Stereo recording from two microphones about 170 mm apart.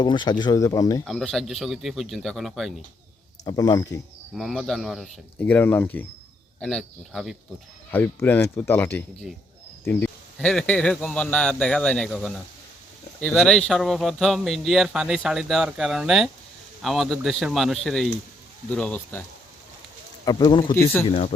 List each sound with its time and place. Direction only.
0.0 s speech: 25° left (ahead or behind)
1.0 s speech: centre (ahead or behind)
3.4 s speech: 20° left (ahead or behind)
4.4 s speech: centre (ahead or behind)
5.4 s speech: 10° left (ahead or behind)
7.9 s speech: 10° left (ahead or behind)
20.2 s speech: 25° left (ahead or behind)
20.7 s speech: 15° left (ahead or behind)